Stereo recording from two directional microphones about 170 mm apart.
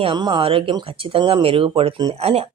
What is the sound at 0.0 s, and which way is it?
Speech, 25° right (ahead or behind).